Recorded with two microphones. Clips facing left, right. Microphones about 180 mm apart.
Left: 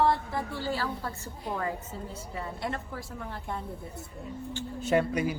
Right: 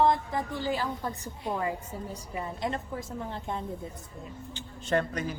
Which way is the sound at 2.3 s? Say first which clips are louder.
Right 2 dB; 20° right (ahead or behind).